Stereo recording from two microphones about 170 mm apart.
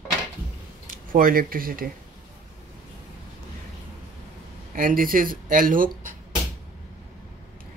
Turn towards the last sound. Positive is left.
turn(degrees=-50)  # may be behind; listen again after turning